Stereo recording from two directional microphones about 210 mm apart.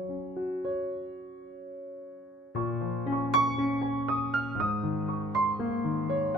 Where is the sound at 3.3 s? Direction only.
Centre (ahead or behind).